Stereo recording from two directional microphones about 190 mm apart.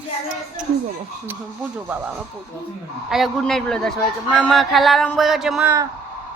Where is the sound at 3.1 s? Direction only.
Centre (ahead or behind).